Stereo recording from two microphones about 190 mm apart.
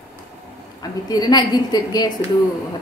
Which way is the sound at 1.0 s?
20° left (ahead or behind).